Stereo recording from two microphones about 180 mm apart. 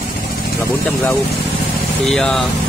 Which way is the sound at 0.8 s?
10° left (ahead or behind).